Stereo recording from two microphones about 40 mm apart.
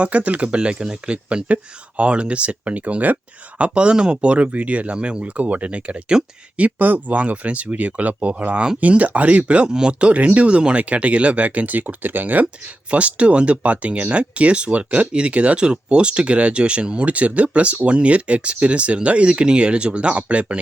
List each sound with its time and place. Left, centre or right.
0.0 s speech: right
3.6 s speech: right
4.9 s speech: right
5.2 s speech: right
12.6 s speech: right